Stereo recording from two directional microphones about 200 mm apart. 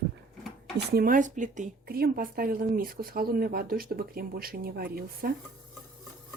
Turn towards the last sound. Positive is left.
turn(degrees=-50)  # may be behind; listen again after turning